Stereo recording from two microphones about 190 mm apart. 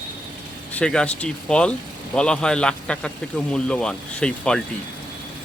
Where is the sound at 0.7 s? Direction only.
5° left (ahead or behind).